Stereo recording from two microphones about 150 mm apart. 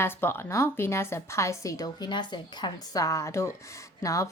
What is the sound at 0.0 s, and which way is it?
A woman's voice, 15° left (ahead or behind).